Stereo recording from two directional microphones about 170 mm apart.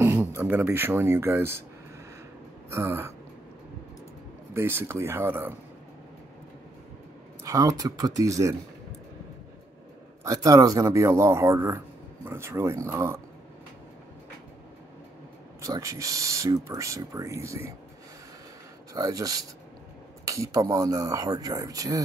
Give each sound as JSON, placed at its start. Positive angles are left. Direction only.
{"t": 0.0, "sound": "speech", "side_deg": -15}
{"t": 2.7, "sound": "speech", "side_deg": -15}
{"t": 4.6, "sound": "speech", "side_deg": -15}
{"t": 7.4, "sound": "speech", "side_deg": -20}
{"t": 10.2, "sound": "speech", "side_deg": -20}
{"t": 15.6, "sound": "speech", "side_deg": -20}
{"t": 18.9, "sound": "speech", "side_deg": -20}